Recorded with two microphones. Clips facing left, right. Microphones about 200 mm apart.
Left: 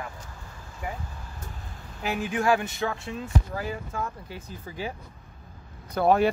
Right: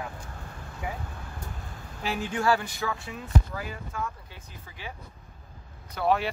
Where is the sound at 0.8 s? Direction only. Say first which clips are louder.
Even; centre (ahead or behind).